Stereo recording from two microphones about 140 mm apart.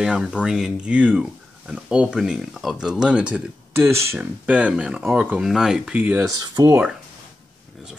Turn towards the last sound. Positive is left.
turn(degrees=-25)  # may be behind; listen again after turning